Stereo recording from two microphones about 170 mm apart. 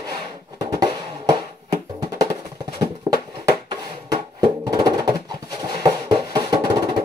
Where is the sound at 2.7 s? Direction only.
25° right (ahead or behind).